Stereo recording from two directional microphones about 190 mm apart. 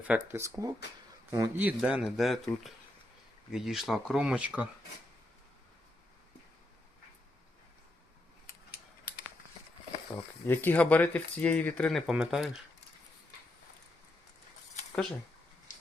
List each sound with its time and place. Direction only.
0.0 s speech: 10° right (ahead or behind)
10.4 s speech: 10° left (ahead or behind)